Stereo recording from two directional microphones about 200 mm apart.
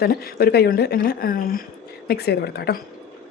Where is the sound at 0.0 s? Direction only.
50° left (ahead or behind).